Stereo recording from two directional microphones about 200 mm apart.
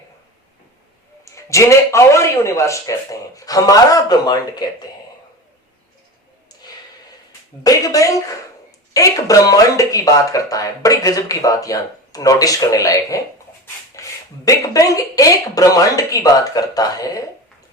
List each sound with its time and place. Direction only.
1.2 s speech: 15° left (ahead or behind)
7.6 s speech: 15° left (ahead or behind)